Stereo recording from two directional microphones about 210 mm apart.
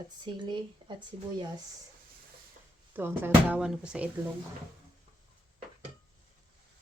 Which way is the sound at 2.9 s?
10° right (ahead or behind).